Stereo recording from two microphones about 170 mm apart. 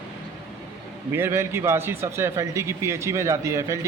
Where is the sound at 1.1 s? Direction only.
15° right (ahead or behind).